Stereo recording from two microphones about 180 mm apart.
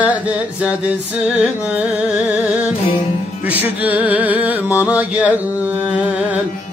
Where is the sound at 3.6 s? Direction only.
10° right (ahead or behind).